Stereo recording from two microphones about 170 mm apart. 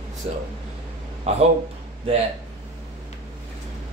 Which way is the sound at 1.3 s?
40° right (ahead or behind).